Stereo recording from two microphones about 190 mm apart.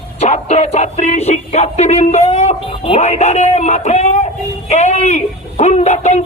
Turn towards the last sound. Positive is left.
turn(degrees=40)  # may be behind; listen again after turning